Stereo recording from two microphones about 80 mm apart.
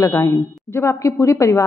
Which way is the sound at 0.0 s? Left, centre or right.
Left.